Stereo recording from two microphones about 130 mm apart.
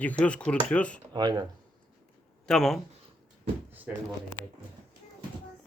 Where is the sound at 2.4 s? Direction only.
Centre (ahead or behind).